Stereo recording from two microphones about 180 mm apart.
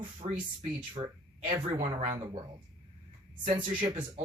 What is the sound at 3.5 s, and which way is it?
Speech, 25° right (ahead or behind).